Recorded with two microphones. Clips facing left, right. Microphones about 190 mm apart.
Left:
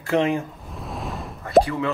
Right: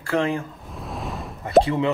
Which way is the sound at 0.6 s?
Centre (ahead or behind).